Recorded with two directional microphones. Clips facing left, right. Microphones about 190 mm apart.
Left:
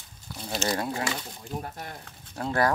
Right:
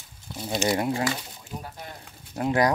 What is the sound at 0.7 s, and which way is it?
Speech, 25° right (ahead or behind).